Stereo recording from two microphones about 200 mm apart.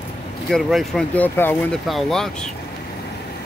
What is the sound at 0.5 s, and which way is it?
Speech, centre (ahead or behind).